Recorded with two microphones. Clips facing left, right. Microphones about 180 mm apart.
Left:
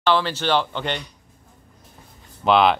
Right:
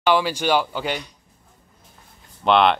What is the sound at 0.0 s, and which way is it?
A man's voice, 10° right (ahead or behind).